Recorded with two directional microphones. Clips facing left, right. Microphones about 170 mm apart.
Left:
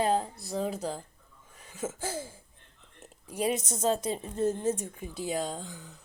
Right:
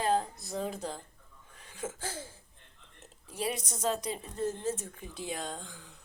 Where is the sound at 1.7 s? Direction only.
5° left (ahead or behind).